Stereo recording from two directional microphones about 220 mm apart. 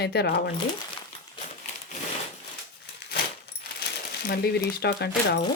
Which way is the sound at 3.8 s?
45° left (ahead or behind).